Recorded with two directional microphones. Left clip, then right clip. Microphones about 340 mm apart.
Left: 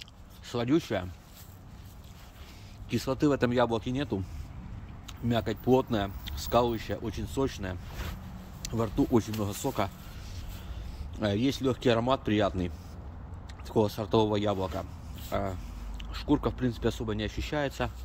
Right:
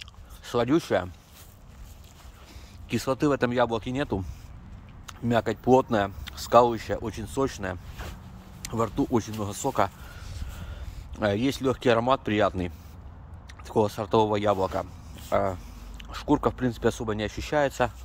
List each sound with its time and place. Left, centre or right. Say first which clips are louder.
0.0 s a sound: right 4 dB; centre
2.9 s speech: right 3 dB; centre
11.1 s speech: right 4 dB; centre